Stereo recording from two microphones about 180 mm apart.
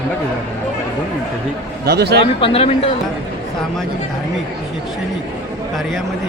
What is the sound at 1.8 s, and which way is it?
Speech, 65° right (ahead or behind).